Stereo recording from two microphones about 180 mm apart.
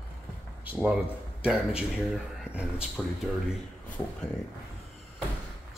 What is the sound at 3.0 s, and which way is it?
Speech, 10° left (ahead or behind).